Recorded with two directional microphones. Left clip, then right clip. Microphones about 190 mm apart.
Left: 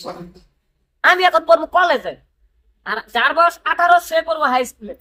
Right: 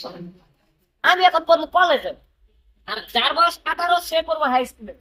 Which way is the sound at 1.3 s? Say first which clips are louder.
Left 4 dB; 20° left (ahead or behind).